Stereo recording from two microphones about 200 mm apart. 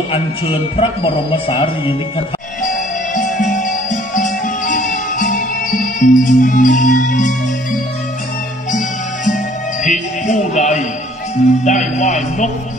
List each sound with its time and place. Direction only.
0.1 s speech: 30° left (ahead or behind)
3.2 s music: 40° left (ahead or behind)
8.7 s music: 40° left (ahead or behind)